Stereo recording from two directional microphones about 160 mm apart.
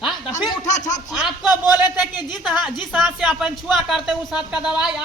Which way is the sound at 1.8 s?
25° left (ahead or behind).